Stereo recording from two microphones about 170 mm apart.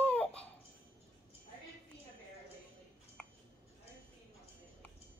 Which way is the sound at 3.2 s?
Centre (ahead or behind).